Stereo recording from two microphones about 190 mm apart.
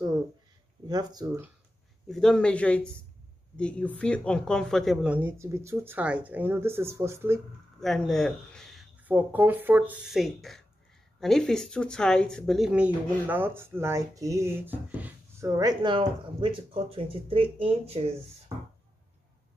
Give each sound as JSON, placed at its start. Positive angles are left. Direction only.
{"t": 0.8, "sound": "speech", "side_deg": -20}
{"t": 2.0, "sound": "speech", "side_deg": 5}
{"t": 7.8, "sound": "speech", "side_deg": 0}